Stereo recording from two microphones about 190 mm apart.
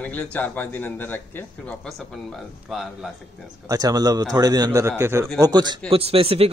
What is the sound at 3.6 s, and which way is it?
A man's voice, 20° right (ahead or behind).